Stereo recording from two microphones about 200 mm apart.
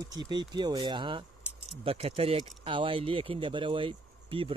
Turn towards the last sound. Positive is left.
turn(degrees=-25)  # may be behind; listen again after turning